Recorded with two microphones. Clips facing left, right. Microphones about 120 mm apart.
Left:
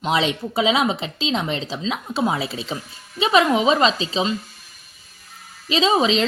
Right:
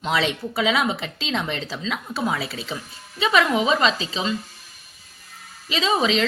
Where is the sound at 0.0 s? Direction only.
20° left (ahead or behind).